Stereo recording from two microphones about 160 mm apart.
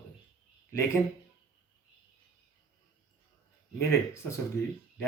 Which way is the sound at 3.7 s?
15° left (ahead or behind).